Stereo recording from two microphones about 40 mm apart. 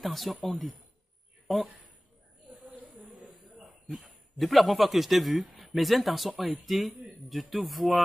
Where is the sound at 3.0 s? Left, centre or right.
Right.